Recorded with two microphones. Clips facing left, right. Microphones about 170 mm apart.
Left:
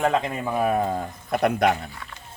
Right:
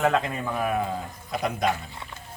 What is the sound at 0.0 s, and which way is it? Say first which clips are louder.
Speech: left 1 dB; 15° left (ahead or behind).